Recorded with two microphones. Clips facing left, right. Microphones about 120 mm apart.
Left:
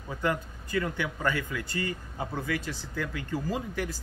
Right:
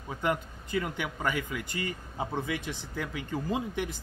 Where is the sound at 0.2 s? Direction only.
20° right (ahead or behind).